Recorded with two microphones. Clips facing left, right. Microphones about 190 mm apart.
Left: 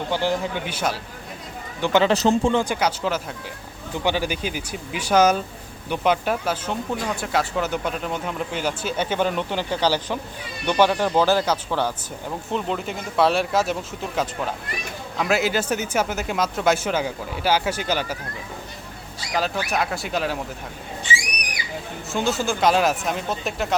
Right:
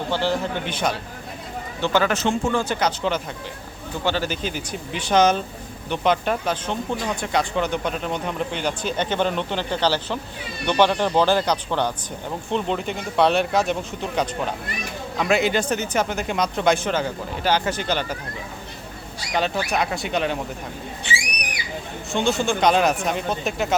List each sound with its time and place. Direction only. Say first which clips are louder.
0.1 s speech: even; 15° left (ahead or behind)
1.8 s speech: left 2 dB; 20° left (ahead or behind)
2.1 s speech: left 4 dB; 35° left (ahead or behind)
2.5 s speech: left 1 dB; 15° left (ahead or behind)
15.2 s speech: right 1 dB; 5° left (ahead or behind)
19.3 s speech: right 1 dB; centre (ahead or behind)
22.1 s speech: right 2 dB; 5° left (ahead or behind)